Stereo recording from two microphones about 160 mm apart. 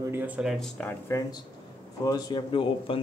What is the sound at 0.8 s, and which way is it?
Speech, 15° left (ahead or behind).